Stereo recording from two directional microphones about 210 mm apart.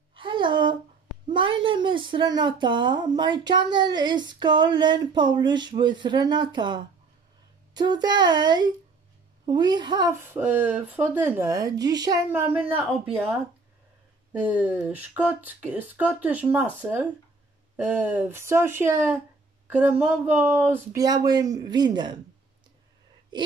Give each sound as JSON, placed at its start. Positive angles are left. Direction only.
{"t": 0.1, "sound": "a sound", "side_deg": -20}
{"t": 1.3, "sound": "a woman's voice", "side_deg": -25}
{"t": 14.4, "sound": "speech", "side_deg": -5}